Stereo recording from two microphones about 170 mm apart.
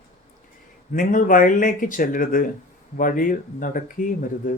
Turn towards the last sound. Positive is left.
turn(degrees=55)  # may be behind; listen again after turning